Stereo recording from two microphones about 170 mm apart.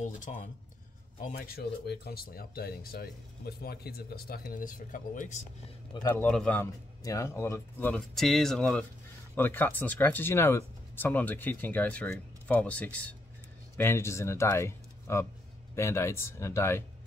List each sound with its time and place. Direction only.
0.0 s speech: 50° left (ahead or behind)
1.2 s speech: 60° left (ahead or behind)
6.1 s speech: 10° left (ahead or behind)